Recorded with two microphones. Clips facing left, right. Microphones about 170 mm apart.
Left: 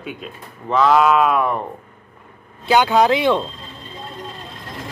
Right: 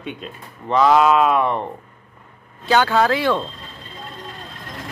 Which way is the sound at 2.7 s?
15° left (ahead or behind).